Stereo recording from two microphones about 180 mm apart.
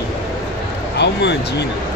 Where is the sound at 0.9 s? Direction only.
70° left (ahead or behind).